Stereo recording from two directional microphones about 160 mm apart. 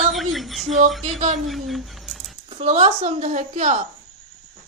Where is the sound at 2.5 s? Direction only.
45° right (ahead or behind).